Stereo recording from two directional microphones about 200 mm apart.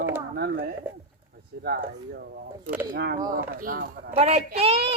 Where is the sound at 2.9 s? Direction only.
55° right (ahead or behind).